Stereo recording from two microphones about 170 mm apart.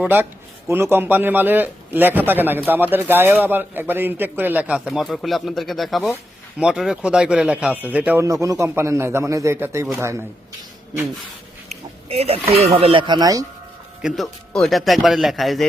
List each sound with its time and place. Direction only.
0.0 s a man's voice: 10° right (ahead or behind)
11.7 s speech: 40° right (ahead or behind); by 13.4 s 20° right (ahead or behind)
14.0 s speech: centre (ahead or behind)